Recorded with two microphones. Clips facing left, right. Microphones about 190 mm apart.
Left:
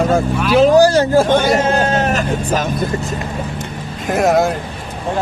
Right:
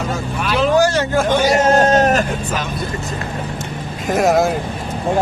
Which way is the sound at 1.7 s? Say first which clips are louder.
Right 3 dB; 40° right (ahead or behind).